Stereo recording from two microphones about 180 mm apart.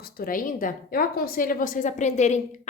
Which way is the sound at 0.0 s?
55° left (ahead or behind).